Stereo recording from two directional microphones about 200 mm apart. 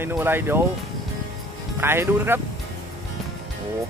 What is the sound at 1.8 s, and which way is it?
Speech, 10° right (ahead or behind).